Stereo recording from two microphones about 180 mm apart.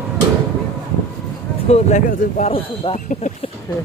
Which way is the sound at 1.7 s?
35° left (ahead or behind).